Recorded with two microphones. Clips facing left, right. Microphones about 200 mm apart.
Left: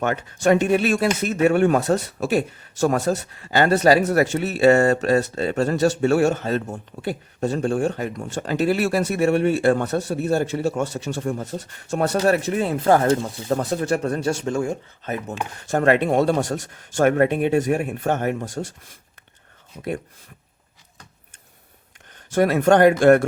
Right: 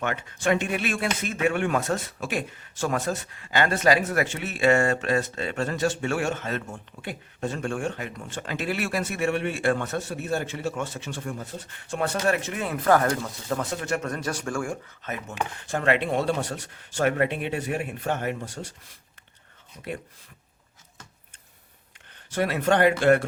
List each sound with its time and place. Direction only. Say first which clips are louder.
0.0 s speech: left 6 dB; 40° left (ahead or behind); by 14.8 s 20° left (ahead or behind)
15.0 s speech: left 4 dB; 35° left (ahead or behind)
22.3 s speech: left 7 dB; 45° left (ahead or behind)